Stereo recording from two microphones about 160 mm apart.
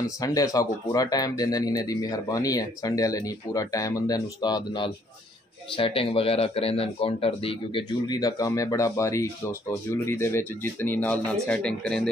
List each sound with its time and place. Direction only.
0.2 s speech: 20° left (ahead or behind); by 12.1 s 5° left (ahead or behind)